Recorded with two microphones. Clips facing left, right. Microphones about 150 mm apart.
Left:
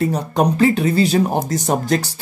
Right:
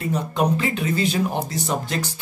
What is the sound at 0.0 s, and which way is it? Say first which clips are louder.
Speech: left 5 dB; 40° left (ahead or behind).